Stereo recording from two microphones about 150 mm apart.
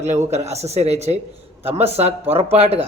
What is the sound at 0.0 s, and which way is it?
Speech, 50° right (ahead or behind).